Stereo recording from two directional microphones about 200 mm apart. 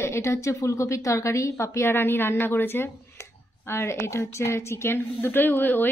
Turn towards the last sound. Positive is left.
turn(degrees=10)  # may be behind; listen again after turning